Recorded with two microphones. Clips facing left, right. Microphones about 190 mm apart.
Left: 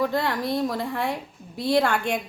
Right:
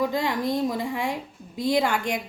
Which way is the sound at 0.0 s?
15° right (ahead or behind).